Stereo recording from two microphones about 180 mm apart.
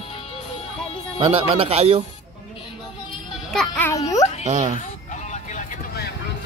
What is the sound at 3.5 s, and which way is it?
Speech, 10° left (ahead or behind).